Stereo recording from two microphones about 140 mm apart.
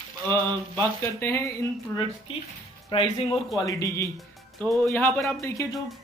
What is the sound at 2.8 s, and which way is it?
Speech, 35° left (ahead or behind).